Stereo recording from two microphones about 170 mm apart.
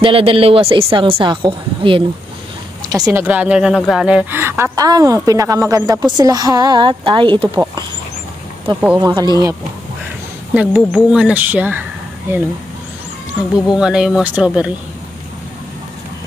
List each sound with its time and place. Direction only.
0.0 s a woman's voice: 35° right (ahead or behind)
2.9 s speech: 15° right (ahead or behind)
9.0 s speech: 25° right (ahead or behind)
10.5 s speech: 10° right (ahead or behind)
13.7 s speech: 5° right (ahead or behind)